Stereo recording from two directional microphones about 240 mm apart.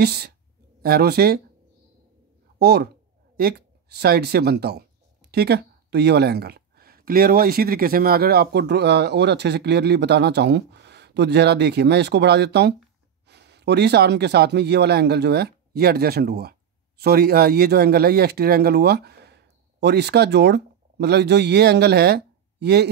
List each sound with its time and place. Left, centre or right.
0.0 s speech: right
2.6 s speech: right